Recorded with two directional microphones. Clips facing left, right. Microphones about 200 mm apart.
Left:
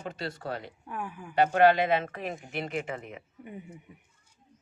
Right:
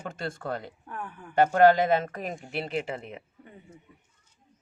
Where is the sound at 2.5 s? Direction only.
30° right (ahead or behind).